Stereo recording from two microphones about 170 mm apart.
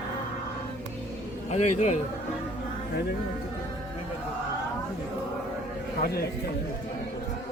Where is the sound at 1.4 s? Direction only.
40° left (ahead or behind).